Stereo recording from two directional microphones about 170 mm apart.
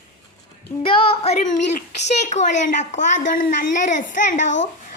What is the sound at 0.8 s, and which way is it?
A child's voice, 35° left (ahead or behind).